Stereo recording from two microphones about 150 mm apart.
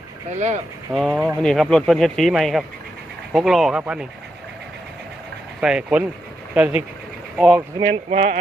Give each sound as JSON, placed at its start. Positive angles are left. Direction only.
{"t": 0.3, "sound": "speech", "side_deg": -55}
{"t": 0.9, "sound": "speech", "side_deg": 0}
{"t": 5.5, "sound": "speech", "side_deg": -5}
{"t": 8.1, "sound": "speech", "side_deg": -60}